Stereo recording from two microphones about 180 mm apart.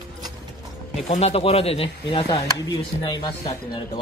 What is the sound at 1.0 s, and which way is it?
Speech, 40° left (ahead or behind).